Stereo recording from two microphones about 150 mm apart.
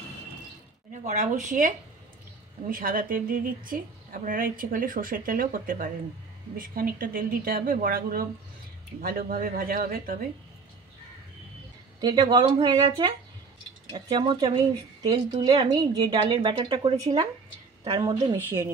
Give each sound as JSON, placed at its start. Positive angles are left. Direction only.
{"t": 1.0, "sound": "speech", "side_deg": -55}
{"t": 2.7, "sound": "a woman's voice", "side_deg": -70}
{"t": 12.0, "sound": "a woman's voice", "side_deg": -30}
{"t": 16.9, "sound": "a woman's voice", "side_deg": -25}